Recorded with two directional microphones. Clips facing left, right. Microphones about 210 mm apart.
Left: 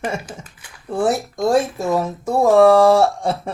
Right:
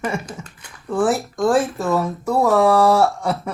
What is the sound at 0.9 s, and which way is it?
Speech, 25° left (ahead or behind).